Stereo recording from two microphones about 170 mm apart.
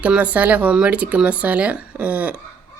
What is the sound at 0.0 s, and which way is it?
Speech, 10° right (ahead or behind).